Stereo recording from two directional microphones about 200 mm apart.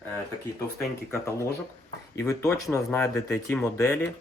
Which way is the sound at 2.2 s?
15° left (ahead or behind).